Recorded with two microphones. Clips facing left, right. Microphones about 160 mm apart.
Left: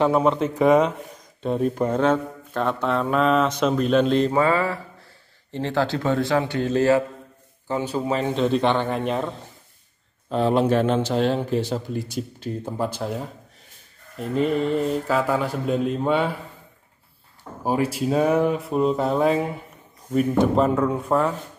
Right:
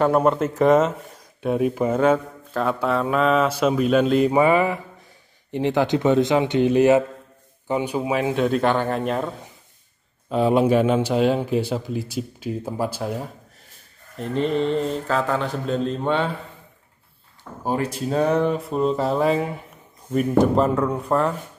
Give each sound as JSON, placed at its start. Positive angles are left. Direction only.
{"t": 0.0, "sound": "speech", "side_deg": -5}
{"t": 14.1, "sound": "mantra", "side_deg": 5}
{"t": 17.6, "sound": "speech", "side_deg": 5}